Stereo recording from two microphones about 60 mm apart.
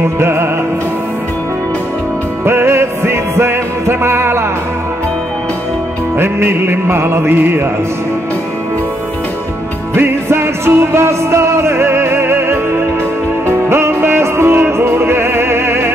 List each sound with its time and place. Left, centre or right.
0.2 s music: right
2.4 s music: right
6.1 s music: right
9.9 s music: right